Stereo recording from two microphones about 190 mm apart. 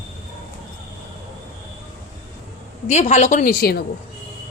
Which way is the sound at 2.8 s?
40° left (ahead or behind).